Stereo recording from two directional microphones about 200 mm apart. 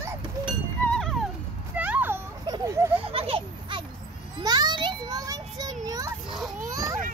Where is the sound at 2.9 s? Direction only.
30° right (ahead or behind).